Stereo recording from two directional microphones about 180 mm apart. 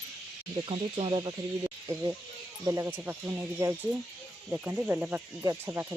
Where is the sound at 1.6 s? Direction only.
15° right (ahead or behind).